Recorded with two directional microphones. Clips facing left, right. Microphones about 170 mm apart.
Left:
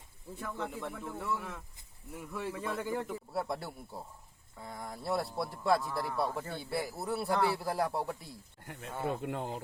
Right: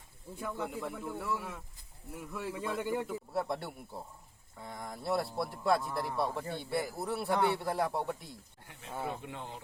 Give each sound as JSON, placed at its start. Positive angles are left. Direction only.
{"t": 0.3, "sound": "speech", "side_deg": -10}
{"t": 8.6, "sound": "speech", "side_deg": 55}
{"t": 8.9, "sound": "speech", "side_deg": -5}
{"t": 9.2, "sound": "speech", "side_deg": 45}